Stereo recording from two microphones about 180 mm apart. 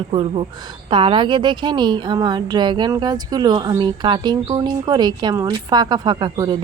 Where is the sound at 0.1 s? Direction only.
30° right (ahead or behind).